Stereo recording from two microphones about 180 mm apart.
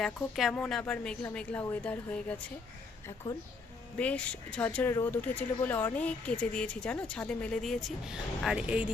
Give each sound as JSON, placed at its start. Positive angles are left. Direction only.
{"t": 0.0, "sound": "a woman's voice", "side_deg": 0}
{"t": 3.9, "sound": "speech", "side_deg": 5}